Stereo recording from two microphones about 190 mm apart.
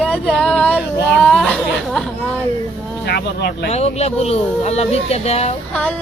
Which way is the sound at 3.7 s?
35° left (ahead or behind).